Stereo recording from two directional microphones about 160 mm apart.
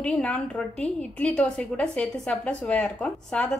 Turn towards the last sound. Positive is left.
turn(degrees=5)  # may be behind; listen again after turning